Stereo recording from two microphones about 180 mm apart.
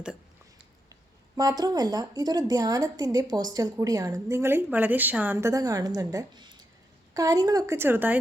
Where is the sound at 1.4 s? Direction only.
20° right (ahead or behind).